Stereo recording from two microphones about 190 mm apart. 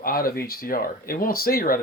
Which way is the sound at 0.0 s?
50° left (ahead or behind).